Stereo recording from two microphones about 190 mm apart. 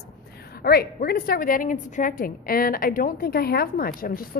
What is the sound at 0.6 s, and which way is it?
A woman's voice, 55° left (ahead or behind).